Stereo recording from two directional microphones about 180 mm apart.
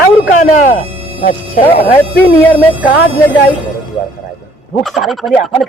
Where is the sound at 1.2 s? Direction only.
50° left (ahead or behind).